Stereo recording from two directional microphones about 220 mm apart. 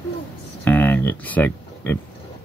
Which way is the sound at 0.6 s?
5° left (ahead or behind).